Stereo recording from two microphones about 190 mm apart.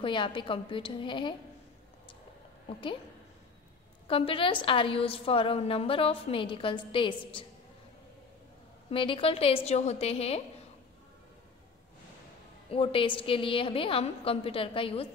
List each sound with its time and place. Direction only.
0.0 s a woman's voice: 25° left (ahead or behind)
4.1 s a woman's voice: 30° left (ahead or behind)
8.9 s a woman's voice: 25° left (ahead or behind)
12.6 s a woman's voice: 30° left (ahead or behind)